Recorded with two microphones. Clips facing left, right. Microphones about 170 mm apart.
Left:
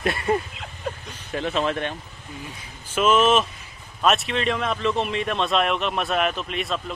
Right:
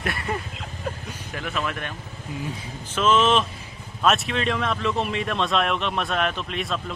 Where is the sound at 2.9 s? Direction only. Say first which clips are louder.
Left 1 dB; 10° left (ahead or behind).